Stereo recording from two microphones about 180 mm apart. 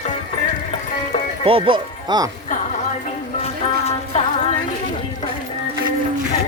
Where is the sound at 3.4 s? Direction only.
35° left (ahead or behind).